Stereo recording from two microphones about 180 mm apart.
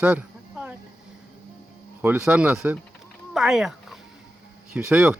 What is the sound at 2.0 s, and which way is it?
Speech, 10° right (ahead or behind).